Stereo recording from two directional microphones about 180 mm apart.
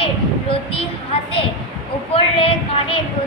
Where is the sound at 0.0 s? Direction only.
30° left (ahead or behind).